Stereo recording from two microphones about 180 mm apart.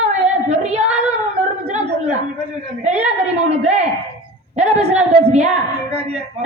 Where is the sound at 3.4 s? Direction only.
35° right (ahead or behind).